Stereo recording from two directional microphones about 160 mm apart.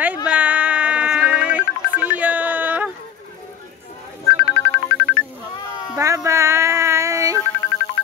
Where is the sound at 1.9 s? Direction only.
10° right (ahead or behind).